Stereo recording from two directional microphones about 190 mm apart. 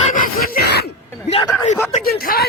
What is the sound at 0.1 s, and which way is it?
Throat clearing, 50° left (ahead or behind).